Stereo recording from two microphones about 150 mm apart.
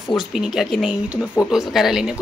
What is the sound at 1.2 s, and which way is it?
Speech, 15° left (ahead or behind).